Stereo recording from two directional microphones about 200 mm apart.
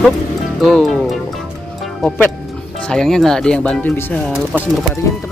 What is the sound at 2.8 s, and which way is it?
Speech, 5° left (ahead or behind).